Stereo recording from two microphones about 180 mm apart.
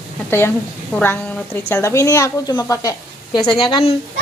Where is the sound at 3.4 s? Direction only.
5° left (ahead or behind).